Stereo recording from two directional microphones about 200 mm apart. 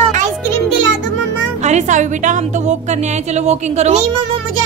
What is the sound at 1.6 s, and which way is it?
A woman's voice, 35° right (ahead or behind).